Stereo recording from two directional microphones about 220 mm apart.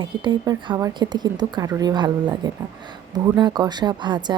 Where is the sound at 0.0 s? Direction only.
20° right (ahead or behind).